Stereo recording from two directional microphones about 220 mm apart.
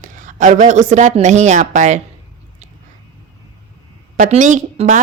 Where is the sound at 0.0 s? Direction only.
35° right (ahead or behind).